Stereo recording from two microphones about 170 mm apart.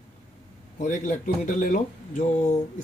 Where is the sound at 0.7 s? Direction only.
45° left (ahead or behind).